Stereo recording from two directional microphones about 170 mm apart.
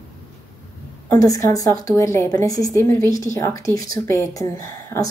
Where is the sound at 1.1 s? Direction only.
20° left (ahead or behind).